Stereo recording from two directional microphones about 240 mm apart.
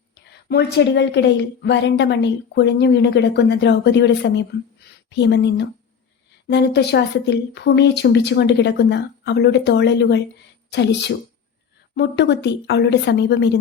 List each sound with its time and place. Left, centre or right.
0.3 s speech: left